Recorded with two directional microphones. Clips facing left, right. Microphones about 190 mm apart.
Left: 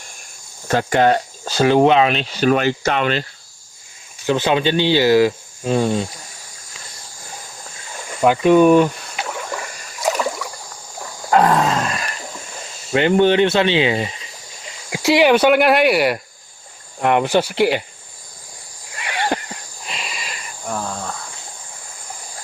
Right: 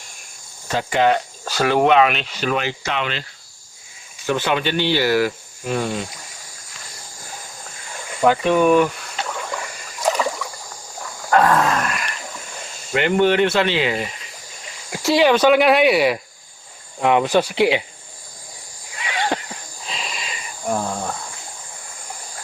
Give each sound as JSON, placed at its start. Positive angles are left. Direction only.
{"t": 0.7, "sound": "speech", "side_deg": 50}
{"t": 1.5, "sound": "speech", "side_deg": 25}
{"t": 4.3, "sound": "speech", "side_deg": 20}
{"t": 8.2, "sound": "speech", "side_deg": 15}
{"t": 10.0, "sound": "rowboat", "side_deg": 5}
{"t": 11.3, "sound": "roar", "side_deg": 20}
{"t": 12.9, "sound": "speech", "side_deg": 25}
{"t": 19.3, "sound": "a sound", "side_deg": 15}
{"t": 19.9, "sound": "a sound", "side_deg": 5}